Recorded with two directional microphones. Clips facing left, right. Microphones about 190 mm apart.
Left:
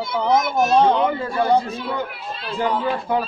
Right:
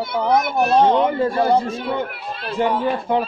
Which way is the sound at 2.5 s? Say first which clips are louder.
Right 2 dB; 25° right (ahead or behind).